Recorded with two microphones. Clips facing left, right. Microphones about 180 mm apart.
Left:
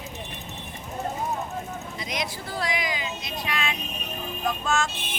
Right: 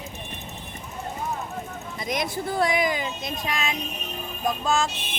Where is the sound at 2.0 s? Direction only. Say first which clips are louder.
Right 6 dB; 50° right (ahead or behind); by 4.9 s 35° right (ahead or behind).